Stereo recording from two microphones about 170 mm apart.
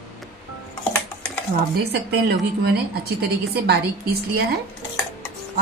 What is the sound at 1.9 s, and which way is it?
A woman's voice, 70° right (ahead or behind).